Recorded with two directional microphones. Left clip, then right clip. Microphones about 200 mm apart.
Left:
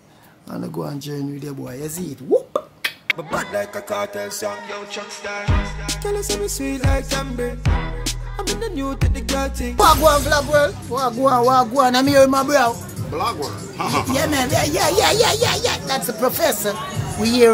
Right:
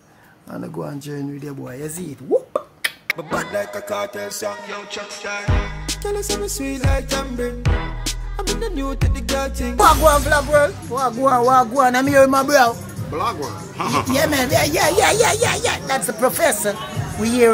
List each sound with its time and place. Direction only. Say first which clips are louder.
0.6 s music: left 1 dB; 5° left (ahead or behind)
2.5 s music: even; centre (ahead or behind)
12.3 s speech: right 2 dB; 20° right (ahead or behind)
13.1 s music: even; 5° right (ahead or behind)
14.1 s speech: right 3 dB; 25° right (ahead or behind)
15.0 s music: left 1 dB; 5° left (ahead or behind)